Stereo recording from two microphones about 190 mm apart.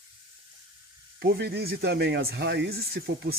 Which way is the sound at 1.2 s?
60° right (ahead or behind).